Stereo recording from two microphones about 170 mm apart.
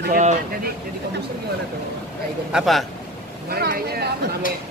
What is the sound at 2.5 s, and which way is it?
Speech, centre (ahead or behind).